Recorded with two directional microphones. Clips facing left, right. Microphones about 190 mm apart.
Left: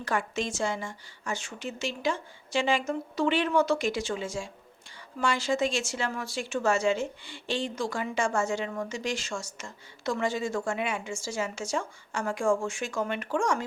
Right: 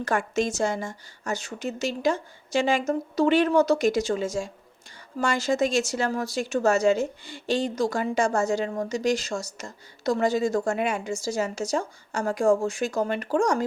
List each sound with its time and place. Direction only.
0.0 s a woman's voice: 45° right (ahead or behind)